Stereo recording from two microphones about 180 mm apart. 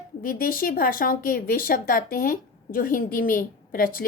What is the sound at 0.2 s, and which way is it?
Speech, 55° left (ahead or behind).